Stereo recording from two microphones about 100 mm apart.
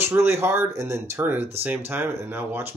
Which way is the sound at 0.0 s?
25° right (ahead or behind).